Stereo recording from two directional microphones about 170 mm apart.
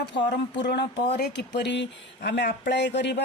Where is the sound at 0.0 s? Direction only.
85° left.